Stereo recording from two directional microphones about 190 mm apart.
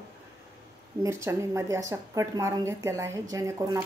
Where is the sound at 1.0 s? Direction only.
15° right (ahead or behind).